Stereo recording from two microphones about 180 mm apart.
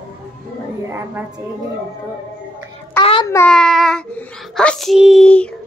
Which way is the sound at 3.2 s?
15° left (ahead or behind).